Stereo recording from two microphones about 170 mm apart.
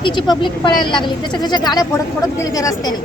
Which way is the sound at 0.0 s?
25° left (ahead or behind).